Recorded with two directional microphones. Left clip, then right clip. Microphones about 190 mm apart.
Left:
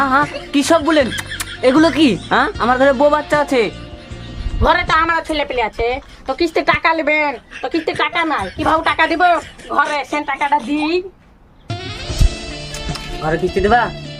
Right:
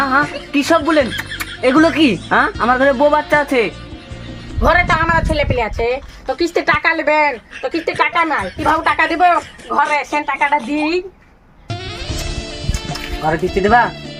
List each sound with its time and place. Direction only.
0.2 s speech: centre (ahead or behind)
0.5 s a woman's voice: 15° left (ahead or behind)
1.0 s speech: centre (ahead or behind)
1.8 s a woman's voice: 15° left (ahead or behind)
2.5 s speech: centre (ahead or behind)
11.7 s music: centre (ahead or behind)